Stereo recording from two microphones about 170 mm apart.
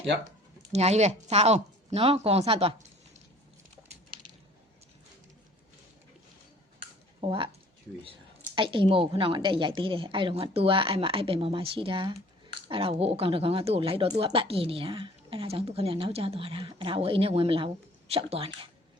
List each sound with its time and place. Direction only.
0.3 s speech: 40° right (ahead or behind)
7.2 s a woman's voice: 30° right (ahead or behind)
8.5 s a woman's voice: 30° right (ahead or behind)